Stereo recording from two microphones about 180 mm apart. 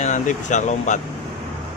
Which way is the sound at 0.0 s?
45° left (ahead or behind).